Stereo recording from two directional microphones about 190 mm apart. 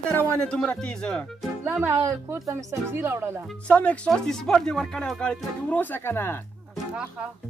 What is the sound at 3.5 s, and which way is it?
Speech, 5° left (ahead or behind).